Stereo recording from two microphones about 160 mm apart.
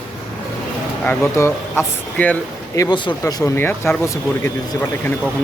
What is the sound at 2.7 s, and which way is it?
Speech, 20° left (ahead or behind).